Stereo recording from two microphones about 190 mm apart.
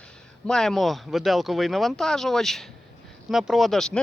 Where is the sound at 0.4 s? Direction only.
5° left (ahead or behind).